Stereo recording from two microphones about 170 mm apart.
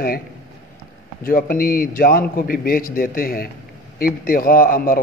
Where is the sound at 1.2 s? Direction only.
60° left (ahead or behind).